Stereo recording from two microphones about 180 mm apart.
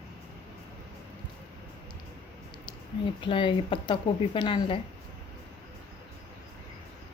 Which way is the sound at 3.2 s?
25° left (ahead or behind).